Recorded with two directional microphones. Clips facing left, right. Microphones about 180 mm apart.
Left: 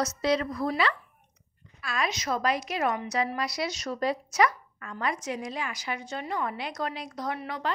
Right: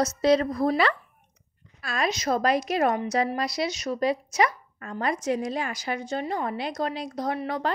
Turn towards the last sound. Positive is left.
turn(degrees=-35)  # may be behind; listen again after turning